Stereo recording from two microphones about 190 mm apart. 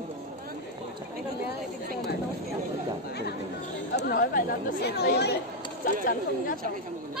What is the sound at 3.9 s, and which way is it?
Speech, 55° left (ahead or behind).